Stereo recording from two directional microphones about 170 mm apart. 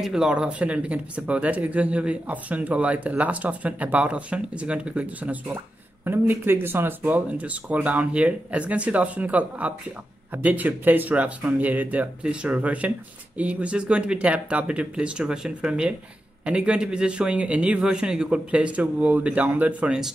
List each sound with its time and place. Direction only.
0.0 s speech: 5° right (ahead or behind)